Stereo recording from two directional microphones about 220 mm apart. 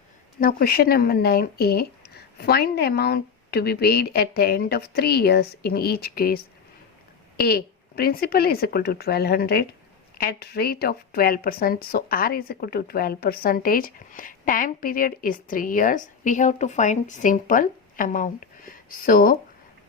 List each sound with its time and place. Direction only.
0.3 s speech: 40° left (ahead or behind)